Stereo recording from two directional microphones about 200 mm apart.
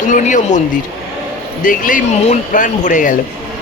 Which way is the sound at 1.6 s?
40° left (ahead or behind).